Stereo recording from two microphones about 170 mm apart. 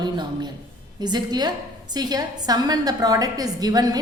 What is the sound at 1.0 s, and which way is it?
A woman's voice, 25° right (ahead or behind).